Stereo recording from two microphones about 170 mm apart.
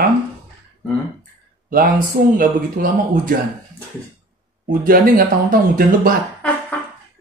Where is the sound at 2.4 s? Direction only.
50° right (ahead or behind).